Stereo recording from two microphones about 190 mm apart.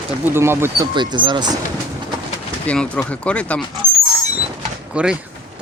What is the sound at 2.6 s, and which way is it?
Speech, 5° left (ahead or behind).